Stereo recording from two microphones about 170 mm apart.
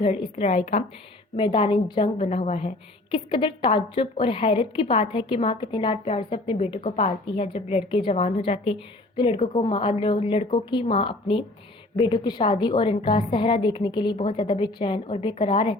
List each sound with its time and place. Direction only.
0.0 s a woman's voice: 35° left (ahead or behind)
1.4 s a woman's voice: 30° left (ahead or behind)